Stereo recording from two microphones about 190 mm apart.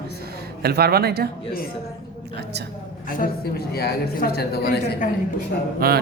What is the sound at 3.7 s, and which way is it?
A woman's voice, 55° left (ahead or behind).